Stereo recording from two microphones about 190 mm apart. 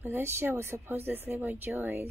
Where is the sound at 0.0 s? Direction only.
10° right (ahead or behind).